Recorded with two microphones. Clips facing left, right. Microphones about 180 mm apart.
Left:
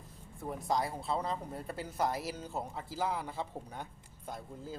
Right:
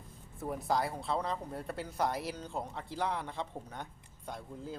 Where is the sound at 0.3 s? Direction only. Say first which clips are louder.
Right 1 dB; centre (ahead or behind).